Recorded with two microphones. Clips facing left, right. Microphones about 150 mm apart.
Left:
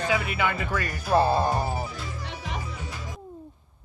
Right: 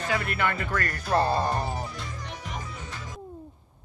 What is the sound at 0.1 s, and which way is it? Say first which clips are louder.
Speech: right 1 dB; 5° left (ahead or behind).